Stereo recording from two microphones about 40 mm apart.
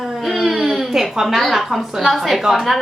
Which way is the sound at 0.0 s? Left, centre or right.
Centre.